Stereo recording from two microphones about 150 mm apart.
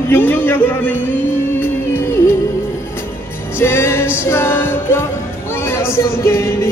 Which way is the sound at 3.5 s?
15° left (ahead or behind).